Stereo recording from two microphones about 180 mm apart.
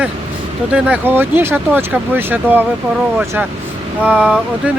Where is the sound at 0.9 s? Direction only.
10° right (ahead or behind).